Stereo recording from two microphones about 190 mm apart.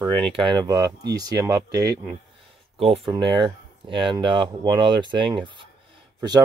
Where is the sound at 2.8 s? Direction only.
30° right (ahead or behind).